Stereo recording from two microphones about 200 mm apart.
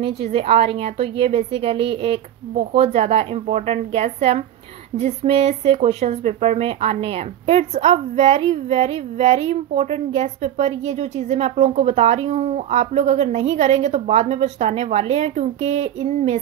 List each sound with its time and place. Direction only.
0.0 s a woman's voice: 30° right (ahead or behind)